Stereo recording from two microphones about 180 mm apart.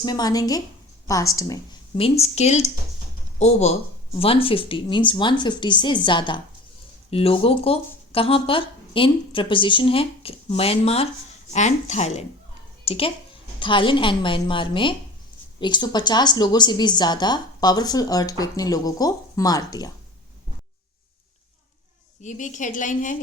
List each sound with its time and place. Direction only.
0.0 s speech: 20° left (ahead or behind)
2.0 s speech: 35° left (ahead or behind)
22.2 s a woman's voice: 45° left (ahead or behind)